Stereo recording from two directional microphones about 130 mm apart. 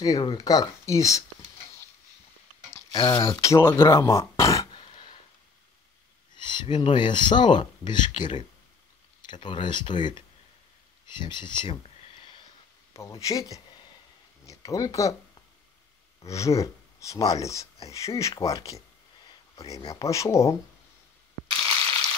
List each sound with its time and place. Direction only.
0.0 s speech: 30° left (ahead or behind)
2.9 s speech: 35° left (ahead or behind)
4.4 s a sound: 25° left (ahead or behind)
4.7 s a sound: 40° left (ahead or behind)
6.3 s speech: 35° left (ahead or behind)
11.1 s a sound: 35° left (ahead or behind)
12.9 s speech: 25° left (ahead or behind)
16.2 s speech: 25° left (ahead or behind)
21.5 s crushing: 45° right (ahead or behind)